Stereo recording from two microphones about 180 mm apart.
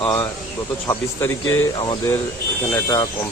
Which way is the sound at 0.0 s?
10° left (ahead or behind).